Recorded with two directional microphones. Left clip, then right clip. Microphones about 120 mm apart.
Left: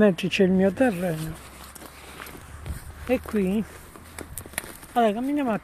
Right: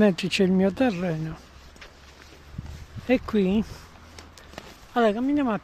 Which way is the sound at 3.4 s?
90° right.